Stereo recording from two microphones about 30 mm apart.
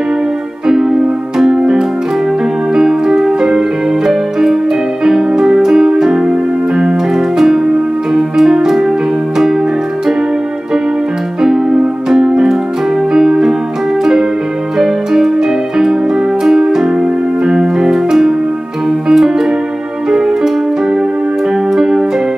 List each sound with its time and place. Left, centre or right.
0.7 s music: centre
2.7 s keyboard: centre
5.0 s music: centre
6.2 s music: right
11.4 s keyboard: centre
12.1 s music: centre
14.8 s keyboard: centre
16.4 s music: centre